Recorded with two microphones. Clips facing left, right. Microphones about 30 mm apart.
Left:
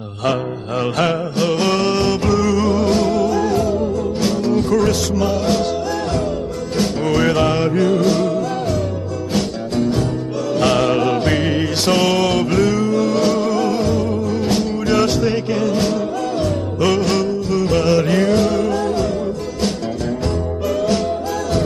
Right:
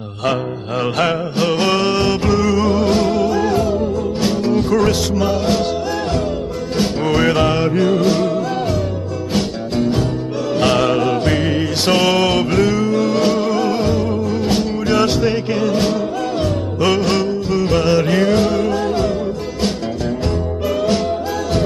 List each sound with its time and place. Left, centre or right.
0.9 s music: centre
6.8 s music: centre
9.3 s music: centre
11.8 s music: centre